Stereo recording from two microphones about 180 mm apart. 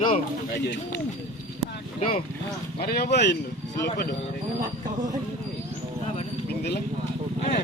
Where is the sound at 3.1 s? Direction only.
75° left (ahead or behind).